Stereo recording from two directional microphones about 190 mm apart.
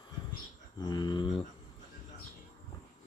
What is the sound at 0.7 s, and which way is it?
Mantra, 20° left (ahead or behind).